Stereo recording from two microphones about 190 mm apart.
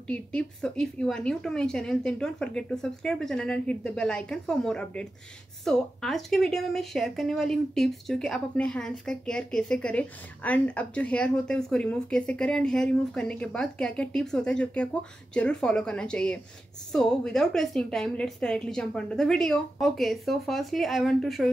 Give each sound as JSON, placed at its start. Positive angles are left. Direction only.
{"t": 0.1, "sound": "speech", "side_deg": 5}